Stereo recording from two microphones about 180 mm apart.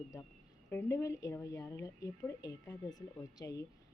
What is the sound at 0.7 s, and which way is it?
A woman's voice, 15° left (ahead or behind).